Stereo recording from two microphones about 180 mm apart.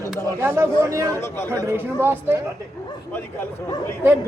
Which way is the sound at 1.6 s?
15° right (ahead or behind).